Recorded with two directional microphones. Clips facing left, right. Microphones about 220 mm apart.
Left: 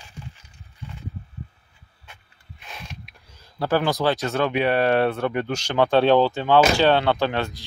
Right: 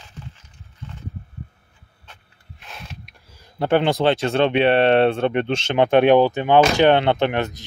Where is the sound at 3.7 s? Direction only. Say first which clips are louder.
Right 4 dB; 25° right (ahead or behind).